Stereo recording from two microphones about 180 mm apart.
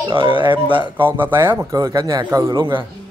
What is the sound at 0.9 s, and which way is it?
A man's voice, 10° right (ahead or behind).